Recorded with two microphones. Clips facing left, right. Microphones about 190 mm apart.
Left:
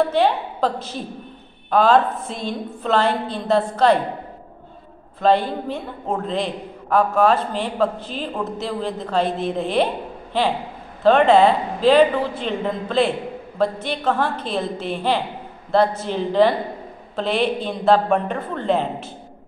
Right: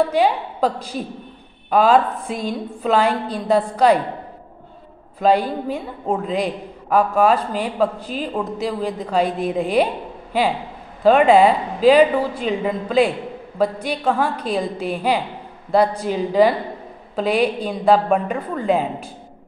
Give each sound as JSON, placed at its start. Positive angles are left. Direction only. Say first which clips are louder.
{"t": 0.1, "sound": "a woman's voice", "louder": "right 1 dB", "side_deg": -10}
{"t": 5.2, "sound": "a woman's voice", "louder": "right 1 dB", "side_deg": -10}
{"t": 11.0, "sound": "a woman's voice", "louder": "right 1 dB", "side_deg": -10}